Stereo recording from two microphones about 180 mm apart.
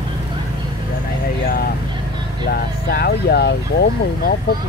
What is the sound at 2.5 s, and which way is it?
Speech, 60° left (ahead or behind).